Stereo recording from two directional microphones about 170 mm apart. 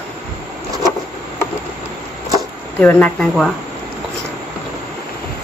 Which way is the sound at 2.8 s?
10° left (ahead or behind).